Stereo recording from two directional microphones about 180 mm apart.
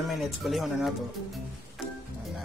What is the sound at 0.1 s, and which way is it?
Speech, centre (ahead or behind).